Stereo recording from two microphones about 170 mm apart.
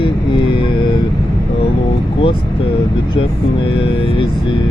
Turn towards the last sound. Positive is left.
turn(degrees=30)  # may be behind; listen again after turning